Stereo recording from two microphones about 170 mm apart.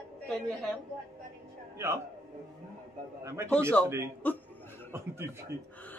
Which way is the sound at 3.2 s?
15° right (ahead or behind).